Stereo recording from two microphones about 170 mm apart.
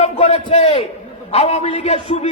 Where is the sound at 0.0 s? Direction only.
40° left (ahead or behind).